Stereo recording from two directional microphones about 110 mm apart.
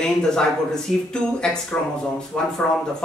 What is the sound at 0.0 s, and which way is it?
Speech, 5° left (ahead or behind).